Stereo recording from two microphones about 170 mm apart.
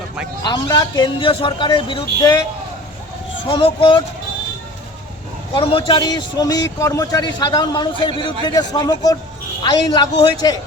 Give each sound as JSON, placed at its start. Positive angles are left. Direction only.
{"t": 0.4, "sound": "a man's voice", "side_deg": 25}
{"t": 3.5, "sound": "a man's voice", "side_deg": 30}
{"t": 5.5, "sound": "a man's voice", "side_deg": 30}